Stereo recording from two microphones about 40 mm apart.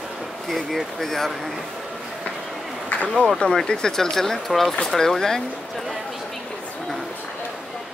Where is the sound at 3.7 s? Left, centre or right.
Centre.